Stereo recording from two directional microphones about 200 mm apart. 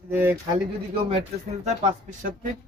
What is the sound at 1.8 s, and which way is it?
Speech, 40° right (ahead or behind).